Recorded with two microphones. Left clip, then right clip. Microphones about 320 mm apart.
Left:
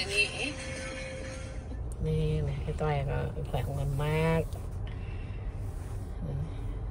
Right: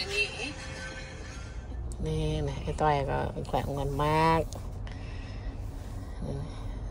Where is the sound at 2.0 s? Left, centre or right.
Centre.